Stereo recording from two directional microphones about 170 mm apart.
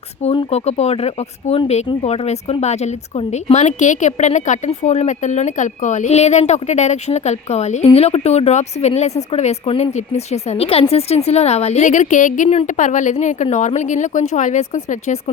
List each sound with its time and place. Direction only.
0.2 s speech: 35° left (ahead or behind)